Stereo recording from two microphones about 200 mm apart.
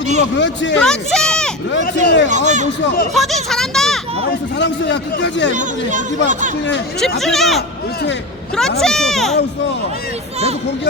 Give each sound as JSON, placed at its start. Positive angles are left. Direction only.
{"t": 0.2, "sound": "a man's voice", "side_deg": 65}
{"t": 0.8, "sound": "a sound", "side_deg": 5}
{"t": 1.8, "sound": "a man's voice", "side_deg": 55}
{"t": 2.3, "sound": "speech", "side_deg": -35}
{"t": 3.2, "sound": "speech", "side_deg": 0}
{"t": 4.3, "sound": "a man's voice", "side_deg": 60}
{"t": 5.5, "sound": "speech", "side_deg": -40}
{"t": 7.2, "sound": "speech", "side_deg": 0}
{"t": 8.8, "sound": "speech", "side_deg": 0}